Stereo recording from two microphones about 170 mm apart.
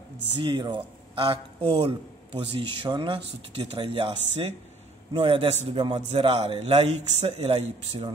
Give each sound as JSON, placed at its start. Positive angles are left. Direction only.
{"t": 0.4, "sound": "a man's voice", "side_deg": -30}
{"t": 5.1, "sound": "a man's voice", "side_deg": -30}